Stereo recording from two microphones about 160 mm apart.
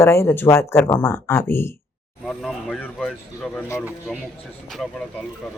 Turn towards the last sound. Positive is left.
turn(degrees=10)  # may be behind; listen again after turning